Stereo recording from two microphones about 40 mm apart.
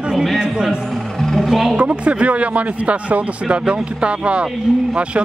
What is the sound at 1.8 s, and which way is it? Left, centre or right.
Speech, right.